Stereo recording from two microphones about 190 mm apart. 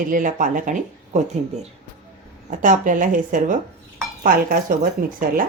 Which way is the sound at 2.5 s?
45° right (ahead or behind).